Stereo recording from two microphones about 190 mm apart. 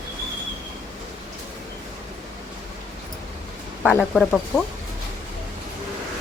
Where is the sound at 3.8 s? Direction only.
5° left (ahead or behind).